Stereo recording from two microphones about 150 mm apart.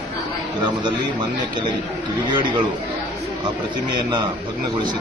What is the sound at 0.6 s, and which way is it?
Speech, 30° right (ahead or behind).